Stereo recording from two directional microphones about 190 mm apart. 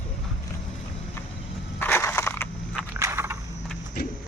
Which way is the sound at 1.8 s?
10° left (ahead or behind).